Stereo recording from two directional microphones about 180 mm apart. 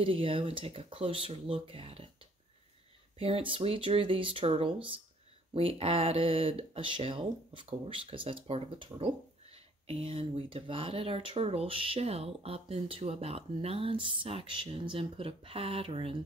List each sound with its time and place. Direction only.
0.0 s speech: 30° right (ahead or behind)
3.2 s speech: 30° right (ahead or behind)